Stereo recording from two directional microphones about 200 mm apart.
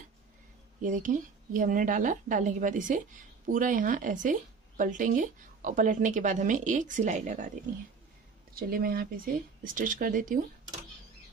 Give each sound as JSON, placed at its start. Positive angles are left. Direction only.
{"t": 0.8, "sound": "a woman's voice", "side_deg": -40}
{"t": 8.5, "sound": "speech", "side_deg": -45}